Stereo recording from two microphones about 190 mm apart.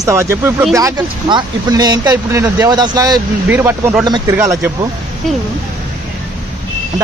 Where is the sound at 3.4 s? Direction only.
10° right (ahead or behind).